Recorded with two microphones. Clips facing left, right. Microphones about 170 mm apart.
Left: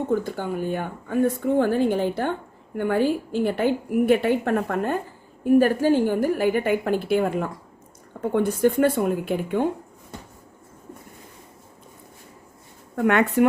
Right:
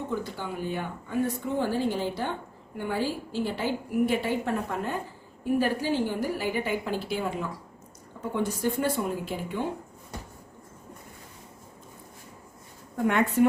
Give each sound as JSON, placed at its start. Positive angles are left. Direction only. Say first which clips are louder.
{"t": 0.1, "sound": "a woman's voice", "louder": "left 8 dB", "side_deg": 50}
{"t": 13.1, "sound": "speech", "louder": "left 4 dB", "side_deg": 70}